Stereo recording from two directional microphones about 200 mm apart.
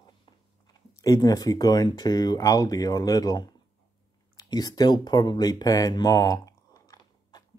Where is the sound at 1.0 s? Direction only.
15° left (ahead or behind).